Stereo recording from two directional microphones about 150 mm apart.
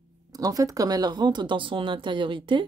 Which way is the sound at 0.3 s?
25° right (ahead or behind).